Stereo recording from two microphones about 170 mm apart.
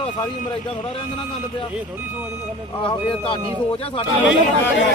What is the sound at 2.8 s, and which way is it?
Speech, 30° left (ahead or behind).